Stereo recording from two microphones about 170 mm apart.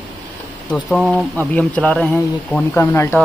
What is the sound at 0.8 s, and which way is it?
Speech, centre (ahead or behind).